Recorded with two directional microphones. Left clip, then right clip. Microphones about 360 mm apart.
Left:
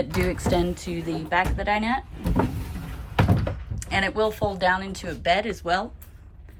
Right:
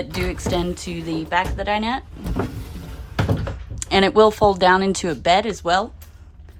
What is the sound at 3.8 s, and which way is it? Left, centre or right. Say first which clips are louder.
Speech: right 9 dB; centre.